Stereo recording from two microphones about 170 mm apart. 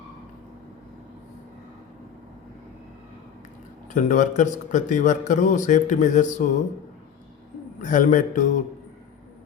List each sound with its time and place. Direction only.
3.9 s a man's voice: 45° left (ahead or behind)
7.8 s a man's voice: 50° left (ahead or behind)